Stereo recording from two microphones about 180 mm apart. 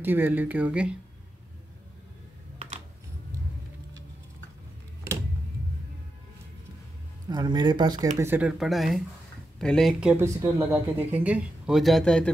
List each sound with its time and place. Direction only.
0.0 s speech: 10° right (ahead or behind)
7.2 s speech: 25° right (ahead or behind)
8.2 s speech: 10° right (ahead or behind)